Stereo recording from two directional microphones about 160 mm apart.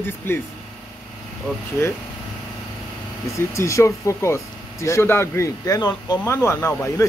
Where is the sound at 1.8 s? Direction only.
15° left (ahead or behind).